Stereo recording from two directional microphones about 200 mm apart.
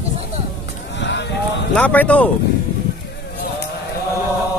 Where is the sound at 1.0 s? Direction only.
60° left (ahead or behind).